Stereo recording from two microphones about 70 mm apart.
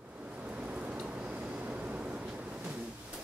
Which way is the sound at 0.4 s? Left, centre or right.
Centre.